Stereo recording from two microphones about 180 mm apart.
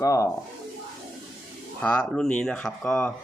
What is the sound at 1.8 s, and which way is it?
Speech, 5° left (ahead or behind).